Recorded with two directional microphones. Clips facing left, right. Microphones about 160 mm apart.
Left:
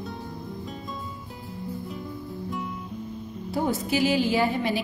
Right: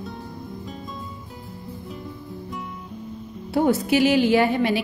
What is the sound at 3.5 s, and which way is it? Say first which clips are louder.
A woman's voice: right 6 dB; 70° right (ahead or behind).